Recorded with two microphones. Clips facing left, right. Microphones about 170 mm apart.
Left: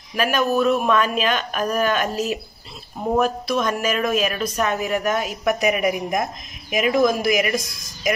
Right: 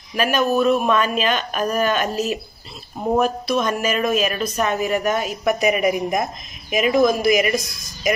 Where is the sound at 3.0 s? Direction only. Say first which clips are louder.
Right 1 dB; 10° right (ahead or behind).